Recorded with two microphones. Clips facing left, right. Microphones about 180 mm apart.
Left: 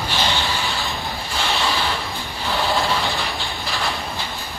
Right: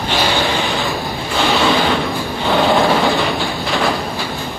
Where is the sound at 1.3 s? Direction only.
90° right; by 3.1 s 70° right (ahead or behind).